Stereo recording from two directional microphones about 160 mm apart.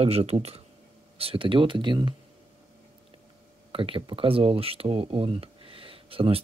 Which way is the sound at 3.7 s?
35° right (ahead or behind).